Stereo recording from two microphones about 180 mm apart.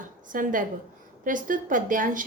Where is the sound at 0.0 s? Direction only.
45° right (ahead or behind).